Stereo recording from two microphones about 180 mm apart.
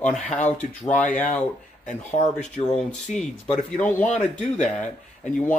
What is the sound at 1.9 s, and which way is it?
Speech, 40° left (ahead or behind).